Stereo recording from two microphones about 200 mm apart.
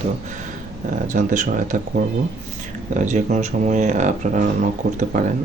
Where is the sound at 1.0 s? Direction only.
40° right (ahead or behind).